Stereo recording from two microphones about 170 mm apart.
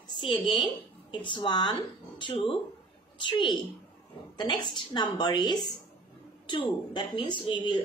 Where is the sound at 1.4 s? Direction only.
25° left (ahead or behind).